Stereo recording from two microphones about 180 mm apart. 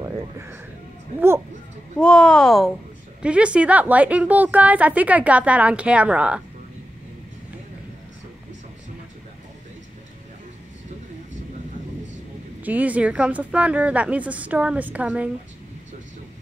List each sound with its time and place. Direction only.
0.0 s speech: 15° right (ahead or behind)
2.0 s a child's voice: 5° left (ahead or behind)
12.6 s a woman's voice: 10° right (ahead or behind)